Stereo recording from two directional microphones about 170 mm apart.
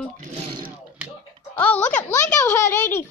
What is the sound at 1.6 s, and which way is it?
Speech, 10° left (ahead or behind).